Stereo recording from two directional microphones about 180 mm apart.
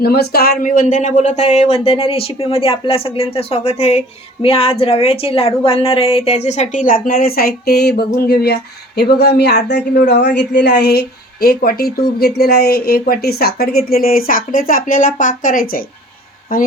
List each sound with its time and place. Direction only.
0.0 s speech: 60° left (ahead or behind)